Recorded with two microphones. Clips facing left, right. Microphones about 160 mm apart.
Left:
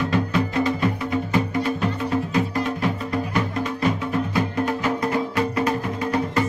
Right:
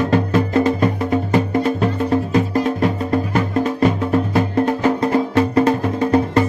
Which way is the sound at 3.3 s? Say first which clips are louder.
Right 6 dB; 45° right (ahead or behind).